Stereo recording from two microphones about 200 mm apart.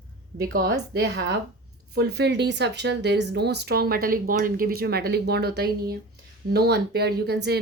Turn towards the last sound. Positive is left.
turn(degrees=-55)  # may be behind; listen again after turning